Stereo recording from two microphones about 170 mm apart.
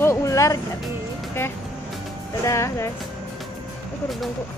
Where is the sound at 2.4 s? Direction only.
15° left (ahead or behind).